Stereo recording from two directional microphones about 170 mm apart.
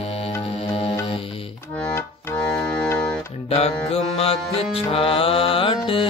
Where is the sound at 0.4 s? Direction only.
35° left (ahead or behind).